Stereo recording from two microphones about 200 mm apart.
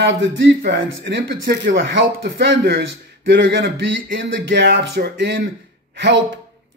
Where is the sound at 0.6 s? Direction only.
65° right (ahead or behind).